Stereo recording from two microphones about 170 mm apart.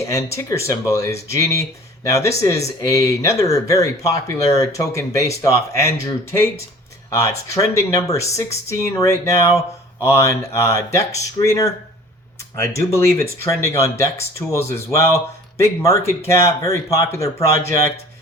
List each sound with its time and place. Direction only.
0.0 s speech: 20° left (ahead or behind)
7.1 s speech: 20° left (ahead or behind)